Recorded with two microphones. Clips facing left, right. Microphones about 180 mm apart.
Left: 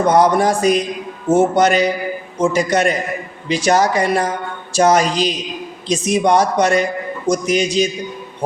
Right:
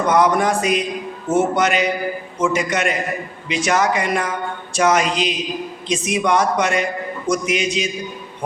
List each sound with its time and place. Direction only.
0.1 s speech: 35° left (ahead or behind)